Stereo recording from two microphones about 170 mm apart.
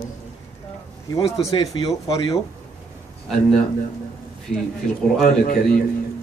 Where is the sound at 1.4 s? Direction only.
25° left (ahead or behind).